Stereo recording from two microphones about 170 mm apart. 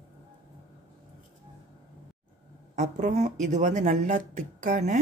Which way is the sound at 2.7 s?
45° right (ahead or behind).